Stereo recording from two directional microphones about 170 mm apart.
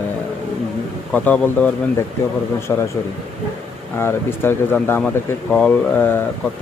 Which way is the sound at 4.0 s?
15° left (ahead or behind).